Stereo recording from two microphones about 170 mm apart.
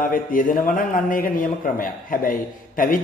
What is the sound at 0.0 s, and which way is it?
A man's voice, 55° left (ahead or behind).